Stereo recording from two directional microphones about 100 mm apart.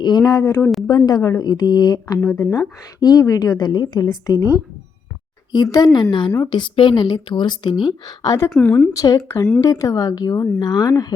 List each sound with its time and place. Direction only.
0.0 s speech: 45° left (ahead or behind)
0.9 s speech: 40° left (ahead or behind)
5.7 s speech: 45° left (ahead or behind)
8.4 s speech: 15° left (ahead or behind)
8.9 s speech: 35° left (ahead or behind)